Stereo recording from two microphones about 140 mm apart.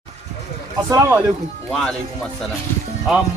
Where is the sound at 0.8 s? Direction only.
20° right (ahead or behind).